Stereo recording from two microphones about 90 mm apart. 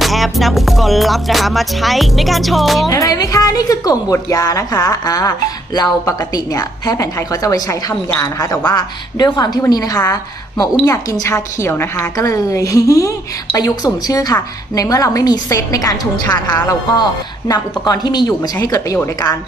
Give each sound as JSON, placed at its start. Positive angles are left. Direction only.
{"t": 0.0, "sound": "music", "side_deg": 0}
{"t": 2.9, "sound": "a woman's voice", "side_deg": 40}
{"t": 16.2, "sound": "speech", "side_deg": 20}
{"t": 16.6, "sound": "a woman's voice", "side_deg": 40}
{"t": 18.6, "sound": "a woman's voice", "side_deg": 40}